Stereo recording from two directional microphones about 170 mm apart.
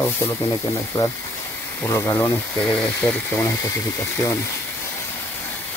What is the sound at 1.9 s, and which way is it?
Speech, 20° left (ahead or behind).